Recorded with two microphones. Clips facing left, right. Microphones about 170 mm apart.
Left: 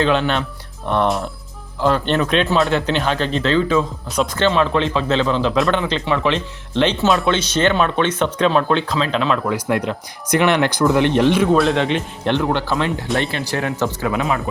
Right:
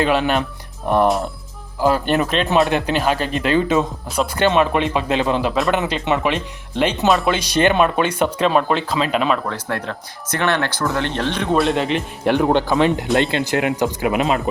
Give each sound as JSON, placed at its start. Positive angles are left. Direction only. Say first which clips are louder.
{"t": 0.0, "sound": "speech", "louder": "even", "side_deg": -5}
{"t": 2.6, "sound": "speech", "louder": "even", "side_deg": -15}
{"t": 9.5, "sound": "speech", "louder": "left 5 dB", "side_deg": 15}
{"t": 11.5, "sound": "speech", "louder": "left 1 dB", "side_deg": 0}